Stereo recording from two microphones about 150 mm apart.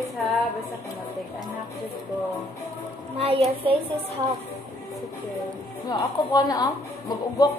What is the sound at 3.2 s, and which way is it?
Speech, 40° right (ahead or behind).